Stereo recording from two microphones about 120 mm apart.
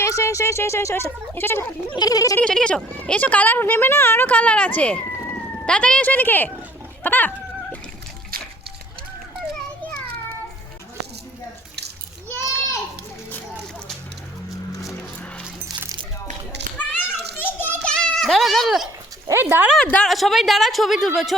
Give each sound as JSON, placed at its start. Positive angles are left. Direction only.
{"t": 0.0, "sound": "speech", "side_deg": 25}
{"t": 2.0, "sound": "a sound", "side_deg": 30}
{"t": 2.4, "sound": "speech", "side_deg": 5}
{"t": 7.0, "sound": "cat", "side_deg": 15}
{"t": 12.4, "sound": "a sound", "side_deg": 25}
{"t": 16.7, "sound": "children playing", "side_deg": 15}
{"t": 17.8, "sound": "goat", "side_deg": 5}
{"t": 19.3, "sound": "speech", "side_deg": -20}
{"t": 19.7, "sound": "speech", "side_deg": 10}